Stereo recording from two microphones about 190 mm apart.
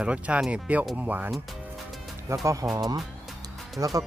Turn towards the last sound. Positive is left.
turn(degrees=-15)  # may be behind; listen again after turning